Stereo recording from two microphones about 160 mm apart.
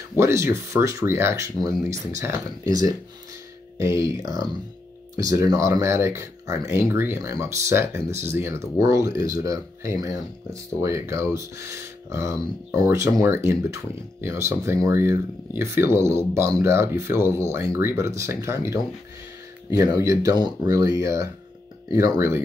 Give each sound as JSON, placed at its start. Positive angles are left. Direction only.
{"t": 0.2, "sound": "speech", "side_deg": -15}
{"t": 20.0, "sound": "speech", "side_deg": -20}